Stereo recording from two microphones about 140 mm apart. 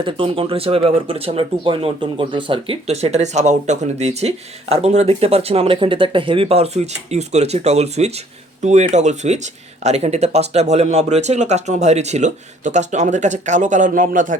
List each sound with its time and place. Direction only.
0.0 s speech: 40° right (ahead or behind); by 14.3 s 70° right (ahead or behind)